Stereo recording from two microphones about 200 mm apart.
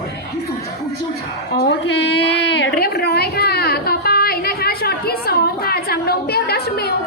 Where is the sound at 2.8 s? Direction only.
50° left (ahead or behind).